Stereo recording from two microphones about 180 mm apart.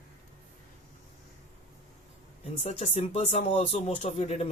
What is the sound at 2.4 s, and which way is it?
Speech, 35° left (ahead or behind).